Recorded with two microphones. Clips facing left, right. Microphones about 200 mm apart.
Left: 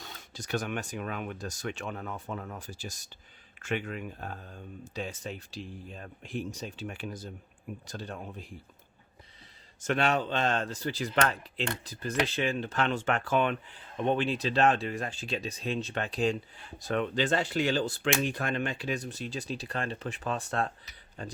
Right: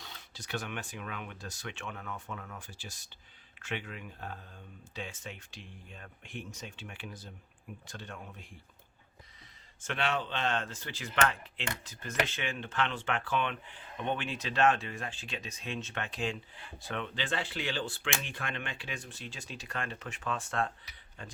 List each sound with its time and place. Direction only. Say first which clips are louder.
0.0 s speech: left 5 dB; 45° left (ahead or behind)
9.8 s speech: left 6 dB; 45° left (ahead or behind)